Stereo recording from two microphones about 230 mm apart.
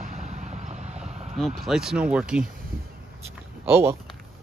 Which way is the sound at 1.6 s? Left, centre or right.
Centre.